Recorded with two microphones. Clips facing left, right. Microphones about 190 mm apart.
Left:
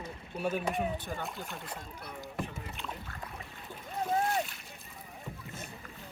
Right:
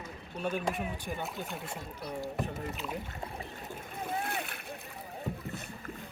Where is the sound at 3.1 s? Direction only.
30° right (ahead or behind).